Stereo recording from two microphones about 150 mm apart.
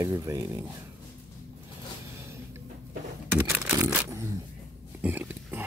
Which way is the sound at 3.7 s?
15° right (ahead or behind).